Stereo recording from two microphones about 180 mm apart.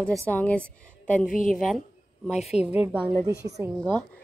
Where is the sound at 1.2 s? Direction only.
45° left (ahead or behind).